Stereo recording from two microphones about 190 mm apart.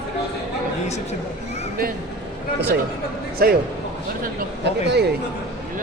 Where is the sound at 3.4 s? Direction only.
55° right (ahead or behind).